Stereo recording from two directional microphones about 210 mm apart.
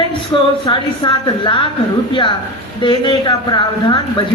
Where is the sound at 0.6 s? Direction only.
20° left (ahead or behind).